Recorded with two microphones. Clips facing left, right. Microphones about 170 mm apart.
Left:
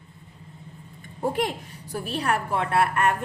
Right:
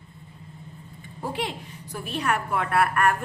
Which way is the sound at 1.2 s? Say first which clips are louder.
Left 5 dB; 45° left (ahead or behind).